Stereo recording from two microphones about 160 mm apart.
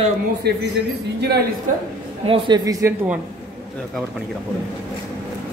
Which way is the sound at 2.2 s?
30° right (ahead or behind).